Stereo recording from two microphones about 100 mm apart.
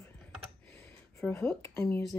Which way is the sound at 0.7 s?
20° left (ahead or behind).